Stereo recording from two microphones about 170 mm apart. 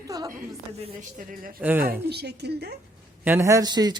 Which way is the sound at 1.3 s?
55° right (ahead or behind).